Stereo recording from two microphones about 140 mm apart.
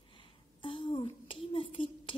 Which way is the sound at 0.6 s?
40° left (ahead or behind).